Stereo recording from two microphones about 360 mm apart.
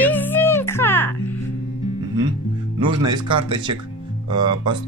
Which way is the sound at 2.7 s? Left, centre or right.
Centre.